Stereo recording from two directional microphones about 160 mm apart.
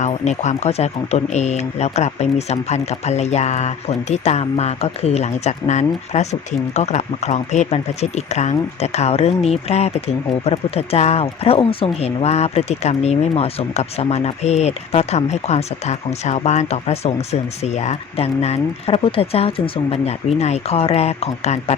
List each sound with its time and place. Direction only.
0.0 s speech: 45° left (ahead or behind)